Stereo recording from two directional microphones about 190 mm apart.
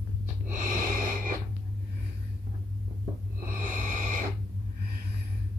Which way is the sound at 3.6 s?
40° right (ahead or behind).